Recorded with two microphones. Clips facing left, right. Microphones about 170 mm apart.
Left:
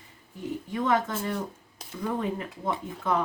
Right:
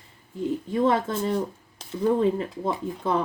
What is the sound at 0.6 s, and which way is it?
Speech, 30° right (ahead or behind).